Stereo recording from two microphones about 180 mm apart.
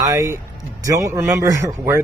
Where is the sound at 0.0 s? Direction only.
15° right (ahead or behind).